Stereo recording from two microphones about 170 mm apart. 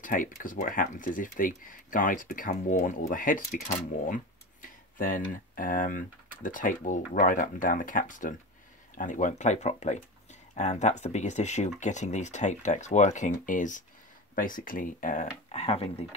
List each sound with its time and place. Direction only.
0.0 s speech: 50° left (ahead or behind); by 16.2 s 35° left (ahead or behind)